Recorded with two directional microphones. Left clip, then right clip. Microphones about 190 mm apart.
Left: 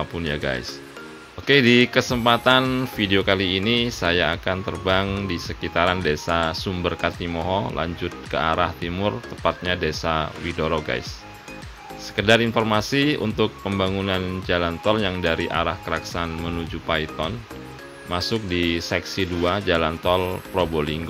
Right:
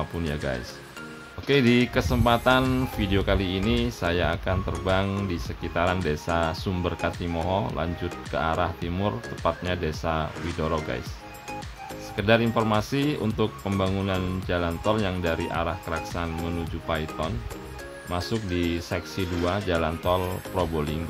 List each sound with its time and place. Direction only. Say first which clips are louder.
0.2 s speech: left 5 dB; 10° left (ahead or behind)
12.2 s speech: left 4 dB; 10° left (ahead or behind)